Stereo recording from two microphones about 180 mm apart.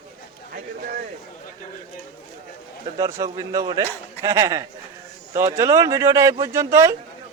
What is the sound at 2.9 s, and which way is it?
A man's voice, 20° right (ahead or behind).